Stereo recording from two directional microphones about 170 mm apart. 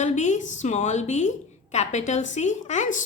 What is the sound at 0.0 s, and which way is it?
A woman's voice, 45° left (ahead or behind).